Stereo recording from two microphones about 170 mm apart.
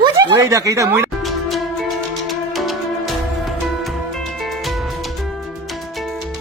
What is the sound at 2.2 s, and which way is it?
Music, centre (ahead or behind).